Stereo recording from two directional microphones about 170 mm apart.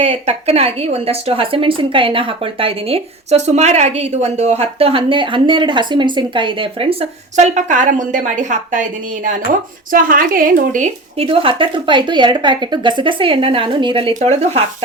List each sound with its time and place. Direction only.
0.0 s speech: 40° right (ahead or behind)
9.9 s a woman's voice: 55° right (ahead or behind)
11.3 s a woman's voice: 30° right (ahead or behind)
14.1 s speech: 45° right (ahead or behind)